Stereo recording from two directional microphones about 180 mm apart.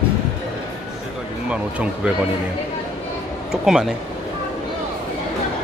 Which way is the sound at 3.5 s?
5° right (ahead or behind).